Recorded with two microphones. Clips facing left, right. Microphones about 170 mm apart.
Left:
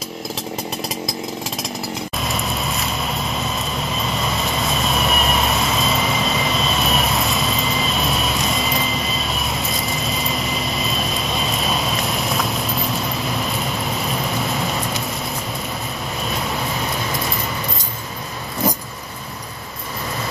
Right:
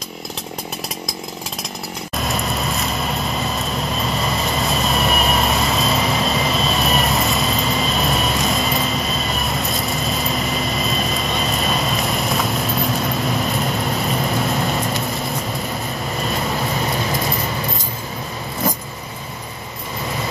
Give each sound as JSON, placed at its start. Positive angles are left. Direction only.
{"t": 2.1, "sound": "vehicle", "side_deg": 0}